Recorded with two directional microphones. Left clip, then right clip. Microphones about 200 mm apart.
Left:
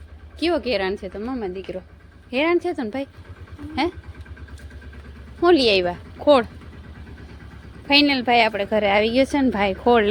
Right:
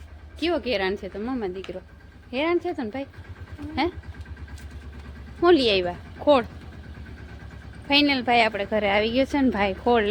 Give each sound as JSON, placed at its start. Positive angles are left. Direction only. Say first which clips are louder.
{"t": 0.3, "sound": "a woman's voice", "louder": "left 3 dB", "side_deg": 15}
{"t": 2.3, "sound": "a woman's voice", "louder": "left 4 dB", "side_deg": 20}
{"t": 5.4, "sound": "a woman's voice", "louder": "left 3 dB", "side_deg": 10}
{"t": 7.9, "sound": "a woman's voice", "louder": "left 3 dB", "side_deg": 15}